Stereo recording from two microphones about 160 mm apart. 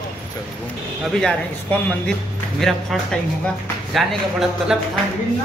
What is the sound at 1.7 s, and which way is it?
A man's voice, 5° left (ahead or behind).